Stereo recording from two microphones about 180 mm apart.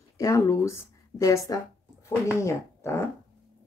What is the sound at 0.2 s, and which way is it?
Speech, 15° left (ahead or behind).